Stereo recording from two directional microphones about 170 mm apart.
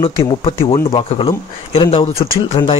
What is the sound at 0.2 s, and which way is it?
Speech, 35° left (ahead or behind).